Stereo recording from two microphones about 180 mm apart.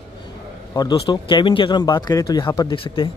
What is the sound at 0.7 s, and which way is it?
A man's voice, 20° left (ahead or behind).